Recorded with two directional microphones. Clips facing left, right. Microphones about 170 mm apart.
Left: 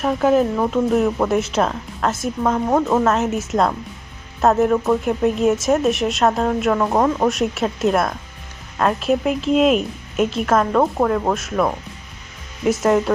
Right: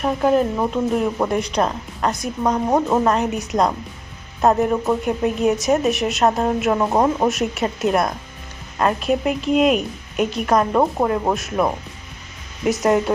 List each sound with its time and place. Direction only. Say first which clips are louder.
0.0 s speech: left 1 dB; centre (ahead or behind)
2.4 s speech: even; 20° right (ahead or behind)
2.9 s speech: left 1 dB; centre (ahead or behind)
7.3 s speech: left 1 dB; centre (ahead or behind)
12.6 s speech: left 1 dB; centre (ahead or behind)